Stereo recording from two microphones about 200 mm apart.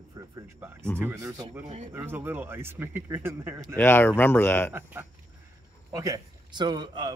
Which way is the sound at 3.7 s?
10° left (ahead or behind).